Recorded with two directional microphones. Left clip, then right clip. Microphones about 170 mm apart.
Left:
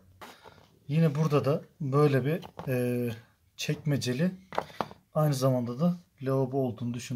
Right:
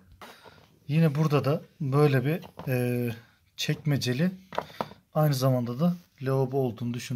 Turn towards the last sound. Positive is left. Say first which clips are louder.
# right 2 dB
turn(degrees=-20)  # may be behind; listen again after turning